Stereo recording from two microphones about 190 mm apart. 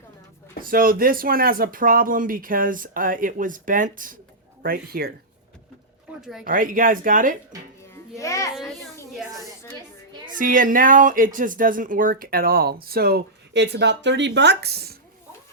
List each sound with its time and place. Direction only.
0.6 s speech: 50° right (ahead or behind)
6.4 s speech: 45° right (ahead or behind)
8.2 s a child's voice: 15° left (ahead or behind)
10.3 s speech: 45° right (ahead or behind)